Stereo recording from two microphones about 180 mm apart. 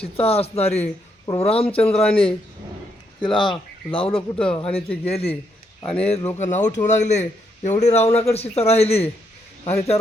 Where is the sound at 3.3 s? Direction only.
25° left (ahead or behind).